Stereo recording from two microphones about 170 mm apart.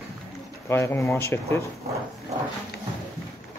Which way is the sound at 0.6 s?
15° left (ahead or behind).